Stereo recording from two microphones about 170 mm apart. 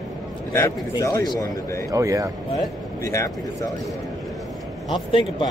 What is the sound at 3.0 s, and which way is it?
Speech, 20° left (ahead or behind).